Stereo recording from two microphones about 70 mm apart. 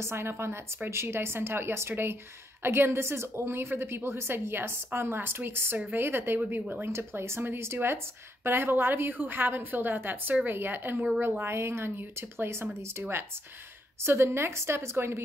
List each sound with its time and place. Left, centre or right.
0.0 s a woman's voice: right
14.0 s a woman's voice: right